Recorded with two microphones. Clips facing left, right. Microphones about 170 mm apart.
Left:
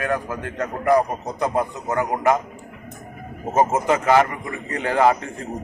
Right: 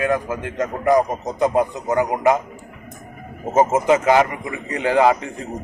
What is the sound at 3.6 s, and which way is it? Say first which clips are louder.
A man's voice: right 3 dB; 20° right (ahead or behind).